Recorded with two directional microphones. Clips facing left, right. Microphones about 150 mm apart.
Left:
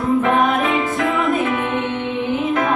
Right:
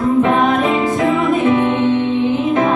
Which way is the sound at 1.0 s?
25° right (ahead or behind).